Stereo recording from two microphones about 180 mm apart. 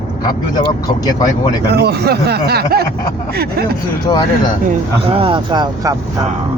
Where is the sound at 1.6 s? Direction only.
65° right (ahead or behind).